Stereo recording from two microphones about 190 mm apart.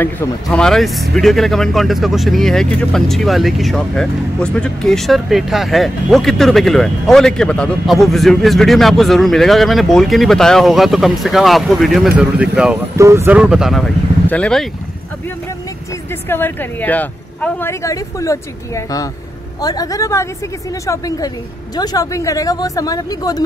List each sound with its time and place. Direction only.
0.5 s speech: centre (ahead or behind)
12.9 s speech: 15° right (ahead or behind); by 14.7 s 5° left (ahead or behind)
16.3 s speech: 10° left (ahead or behind)